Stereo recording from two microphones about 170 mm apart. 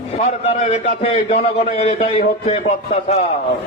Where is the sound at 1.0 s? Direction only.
35° left (ahead or behind).